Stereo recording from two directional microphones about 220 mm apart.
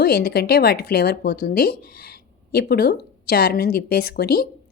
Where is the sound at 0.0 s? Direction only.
45° left (ahead or behind).